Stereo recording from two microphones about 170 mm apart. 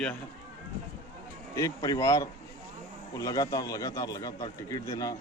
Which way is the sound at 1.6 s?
20° left (ahead or behind).